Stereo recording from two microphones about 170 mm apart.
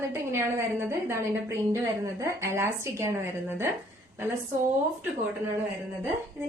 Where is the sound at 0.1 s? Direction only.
15° right (ahead or behind).